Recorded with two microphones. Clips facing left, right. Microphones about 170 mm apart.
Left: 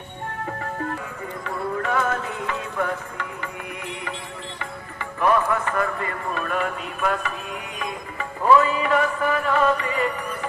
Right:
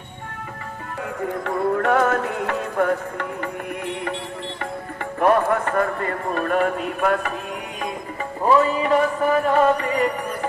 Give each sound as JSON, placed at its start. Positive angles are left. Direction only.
{"t": 1.2, "sound": "music", "side_deg": -60}
{"t": 5.2, "sound": "a man's voice", "side_deg": -50}
{"t": 8.5, "sound": "music", "side_deg": -30}